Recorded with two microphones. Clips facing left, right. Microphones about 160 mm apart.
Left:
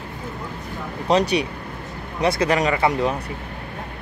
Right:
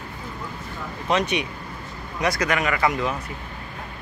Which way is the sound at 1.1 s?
35° left (ahead or behind).